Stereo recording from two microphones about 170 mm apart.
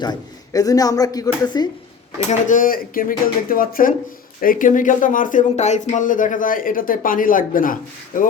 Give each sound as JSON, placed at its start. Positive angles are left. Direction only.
{"t": 0.0, "sound": "speech", "side_deg": 25}
{"t": 2.3, "sound": "speech", "side_deg": 50}